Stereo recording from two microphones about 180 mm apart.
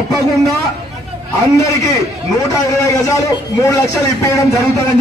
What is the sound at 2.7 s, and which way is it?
A man's voice, 15° left (ahead or behind).